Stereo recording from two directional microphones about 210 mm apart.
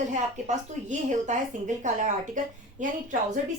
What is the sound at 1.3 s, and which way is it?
Speech, 35° right (ahead or behind).